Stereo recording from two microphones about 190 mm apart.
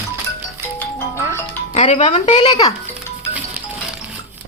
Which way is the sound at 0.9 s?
15° left (ahead or behind).